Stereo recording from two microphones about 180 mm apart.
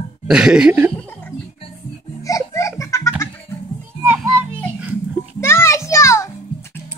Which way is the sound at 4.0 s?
10° right (ahead or behind).